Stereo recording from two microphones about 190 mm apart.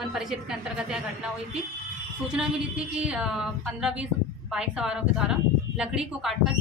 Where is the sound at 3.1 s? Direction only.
5° right (ahead or behind).